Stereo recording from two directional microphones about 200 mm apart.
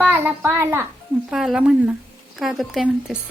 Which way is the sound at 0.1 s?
10° right (ahead or behind).